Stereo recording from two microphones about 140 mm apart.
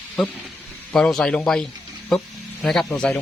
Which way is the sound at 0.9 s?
5° left (ahead or behind).